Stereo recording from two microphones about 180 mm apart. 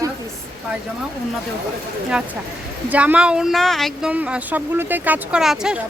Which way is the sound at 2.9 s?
10° right (ahead or behind).